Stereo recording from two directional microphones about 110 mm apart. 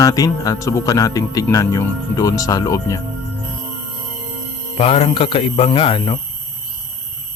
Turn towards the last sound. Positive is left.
turn(degrees=45)  # may be behind; listen again after turning